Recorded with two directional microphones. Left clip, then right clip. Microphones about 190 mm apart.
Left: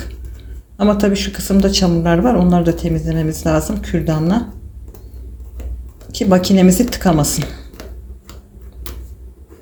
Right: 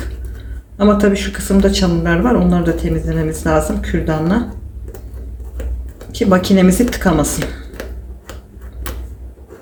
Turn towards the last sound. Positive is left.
turn(degrees=0)  # may be behind; listen again after turning